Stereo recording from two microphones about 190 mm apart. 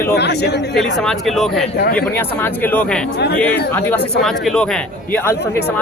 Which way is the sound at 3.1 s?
60° left (ahead or behind).